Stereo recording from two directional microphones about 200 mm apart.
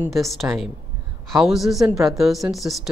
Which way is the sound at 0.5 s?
10° right (ahead or behind).